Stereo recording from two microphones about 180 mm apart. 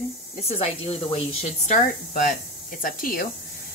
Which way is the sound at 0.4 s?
35° left (ahead or behind).